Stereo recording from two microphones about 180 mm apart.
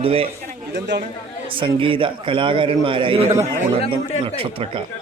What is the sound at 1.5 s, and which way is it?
Speech, 30° right (ahead or behind).